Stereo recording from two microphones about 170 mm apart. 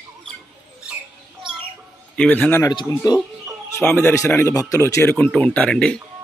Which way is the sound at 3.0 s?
25° left (ahead or behind).